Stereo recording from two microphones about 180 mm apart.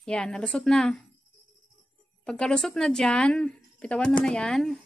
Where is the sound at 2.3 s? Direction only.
5° left (ahead or behind).